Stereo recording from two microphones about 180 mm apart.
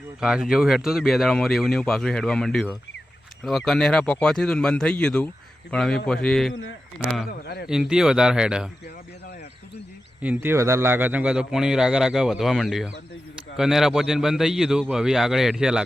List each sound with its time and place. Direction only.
0.2 s a man's voice: 5° right (ahead or behind)
7.3 s speech: 60° left (ahead or behind)
7.7 s a man's voice: 5° right (ahead or behind)
10.2 s a man's voice: 10° right (ahead or behind)